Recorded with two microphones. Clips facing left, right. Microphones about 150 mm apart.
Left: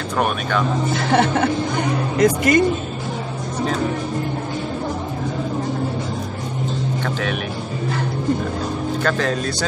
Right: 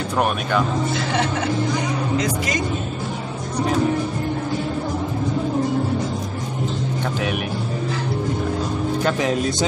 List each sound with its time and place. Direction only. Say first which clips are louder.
0.2 s speech: even; 5° right (ahead or behind)
1.1 s speech: left 7 dB; 55° left (ahead or behind)
9.0 s speech: right 1 dB; 15° right (ahead or behind)